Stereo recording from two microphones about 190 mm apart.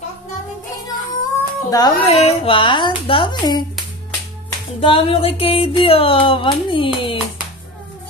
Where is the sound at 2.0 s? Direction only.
30° left (ahead or behind).